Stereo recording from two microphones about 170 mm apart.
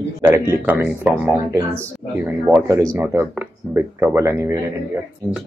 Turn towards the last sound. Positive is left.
turn(degrees=-15)  # may be behind; listen again after turning